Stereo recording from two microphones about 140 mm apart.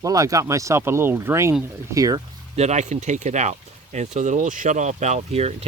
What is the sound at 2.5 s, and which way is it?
Speech, 50° right (ahead or behind).